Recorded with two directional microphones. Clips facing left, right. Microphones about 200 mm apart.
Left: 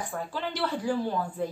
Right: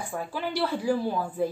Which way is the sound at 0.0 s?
10° right (ahead or behind).